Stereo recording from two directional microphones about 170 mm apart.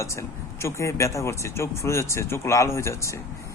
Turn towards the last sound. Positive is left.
turn(degrees=15)  # may be behind; listen again after turning